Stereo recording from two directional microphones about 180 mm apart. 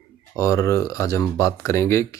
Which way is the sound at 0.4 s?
20° left (ahead or behind).